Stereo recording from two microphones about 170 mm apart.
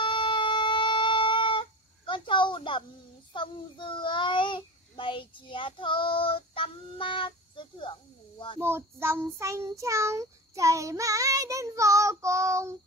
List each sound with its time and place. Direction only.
0.0 s a sound: 30° left (ahead or behind)
3.3 s a child's voice: 30° left (ahead or behind)
8.5 s child singing: 15° right (ahead or behind)